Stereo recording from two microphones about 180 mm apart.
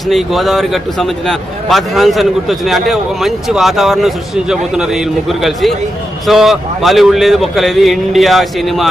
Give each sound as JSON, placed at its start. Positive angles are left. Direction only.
{"t": 0.1, "sound": "a man's voice", "side_deg": 0}